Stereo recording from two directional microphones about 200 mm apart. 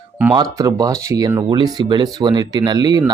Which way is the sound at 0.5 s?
20° right (ahead or behind).